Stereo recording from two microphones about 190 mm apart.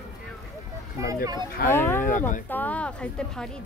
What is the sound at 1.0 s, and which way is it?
Speech, 15° right (ahead or behind).